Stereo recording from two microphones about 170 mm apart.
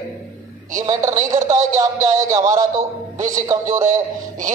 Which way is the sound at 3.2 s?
50° right (ahead or behind).